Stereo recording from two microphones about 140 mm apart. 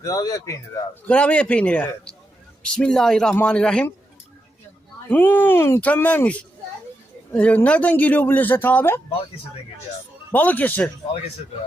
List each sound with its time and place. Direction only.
0.0 s speech: 25° left (ahead or behind)
1.0 s a man's voice: 10° left (ahead or behind)
5.0 s speech: 15° left (ahead or behind)
10.3 s speech: 10° left (ahead or behind)